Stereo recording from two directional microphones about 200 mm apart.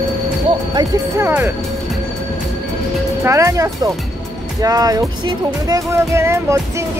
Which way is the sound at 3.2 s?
15° right (ahead or behind).